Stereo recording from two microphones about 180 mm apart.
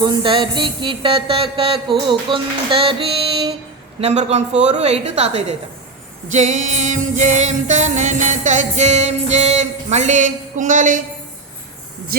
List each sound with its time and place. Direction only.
0.0 s music: 25° right (ahead or behind)
4.0 s music: 35° right (ahead or behind)